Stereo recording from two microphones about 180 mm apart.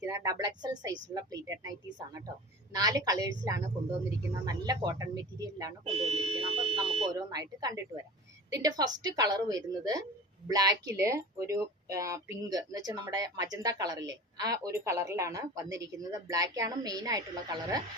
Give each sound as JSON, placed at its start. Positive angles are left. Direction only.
{"t": 0.0, "sound": "a woman's voice", "side_deg": -20}
{"t": 2.7, "sound": "speech", "side_deg": -20}
{"t": 5.9, "sound": "speech", "side_deg": -35}